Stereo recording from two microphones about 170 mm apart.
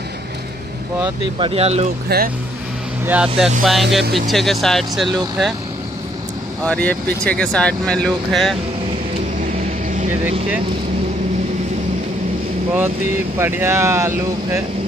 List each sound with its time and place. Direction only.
1.4 s speech: 35° right (ahead or behind)
2.0 s speech: 60° right (ahead or behind)
3.1 s speech: 5° right (ahead or behind)
6.6 s speech: 5° left (ahead or behind)
13.4 s speech: 15° right (ahead or behind)